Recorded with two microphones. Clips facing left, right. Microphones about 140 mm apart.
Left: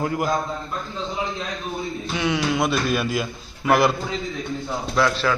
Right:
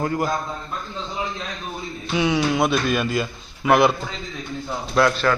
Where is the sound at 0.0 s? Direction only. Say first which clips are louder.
Right 1 dB; 10° left (ahead or behind).